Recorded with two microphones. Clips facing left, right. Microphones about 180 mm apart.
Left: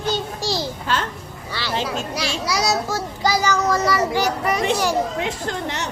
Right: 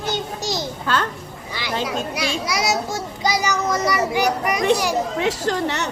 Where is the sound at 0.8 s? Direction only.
50° right (ahead or behind).